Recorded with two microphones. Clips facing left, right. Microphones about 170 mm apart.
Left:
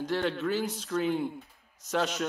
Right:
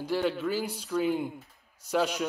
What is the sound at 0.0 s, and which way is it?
A man's voice, 10° right (ahead or behind).